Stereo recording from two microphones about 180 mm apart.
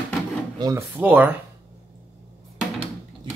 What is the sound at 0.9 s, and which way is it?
Speech, 10° right (ahead or behind).